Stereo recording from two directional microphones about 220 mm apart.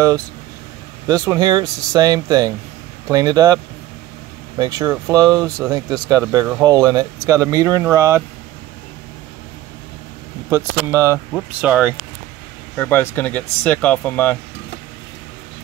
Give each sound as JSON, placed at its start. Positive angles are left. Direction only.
{"t": 1.0, "sound": "speech", "side_deg": -15}
{"t": 4.6, "sound": "speech", "side_deg": -20}
{"t": 10.5, "sound": "speech", "side_deg": -10}
{"t": 12.7, "sound": "speech", "side_deg": 10}